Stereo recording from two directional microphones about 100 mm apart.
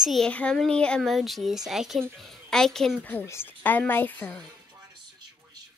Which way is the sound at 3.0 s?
20° left (ahead or behind).